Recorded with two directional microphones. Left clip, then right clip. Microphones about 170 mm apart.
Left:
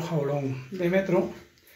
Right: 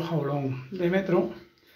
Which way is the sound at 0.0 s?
Centre (ahead or behind).